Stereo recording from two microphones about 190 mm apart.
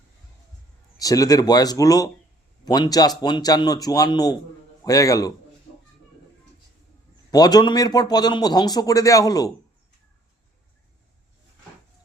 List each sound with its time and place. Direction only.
0.9 s a man's voice: 20° left (ahead or behind)
7.3 s speech: 20° left (ahead or behind)